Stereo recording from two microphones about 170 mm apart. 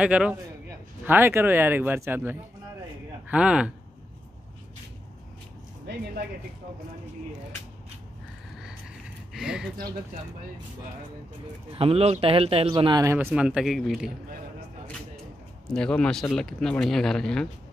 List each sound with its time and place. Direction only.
0.0 s speech: 10° right (ahead or behind)
5.9 s speech: 90° right
9.3 s speech: 5° right (ahead or behind)
11.7 s speech: 35° right (ahead or behind); by 13.3 s 15° right (ahead or behind)
13.3 s speech: 5° right (ahead or behind)
15.6 s speech: 5° left (ahead or behind)